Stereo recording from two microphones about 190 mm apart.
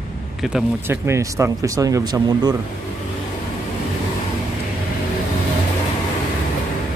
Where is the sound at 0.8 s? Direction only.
15° right (ahead or behind).